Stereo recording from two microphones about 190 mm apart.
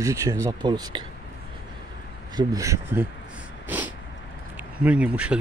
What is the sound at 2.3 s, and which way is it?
Speech, 20° right (ahead or behind).